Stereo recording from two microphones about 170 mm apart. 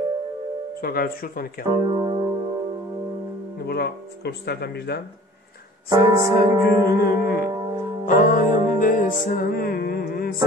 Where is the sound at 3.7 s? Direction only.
70° left (ahead or behind).